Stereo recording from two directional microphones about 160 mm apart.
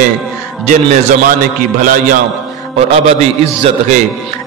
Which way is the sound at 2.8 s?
40° right (ahead or behind).